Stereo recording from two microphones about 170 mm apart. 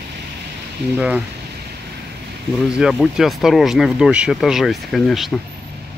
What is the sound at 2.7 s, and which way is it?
Speech, 5° right (ahead or behind).